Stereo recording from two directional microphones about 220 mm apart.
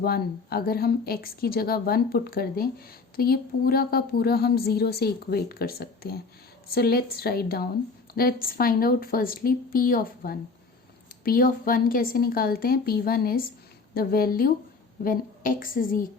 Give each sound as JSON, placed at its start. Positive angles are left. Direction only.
{"t": 0.0, "sound": "a woman's voice", "side_deg": 45}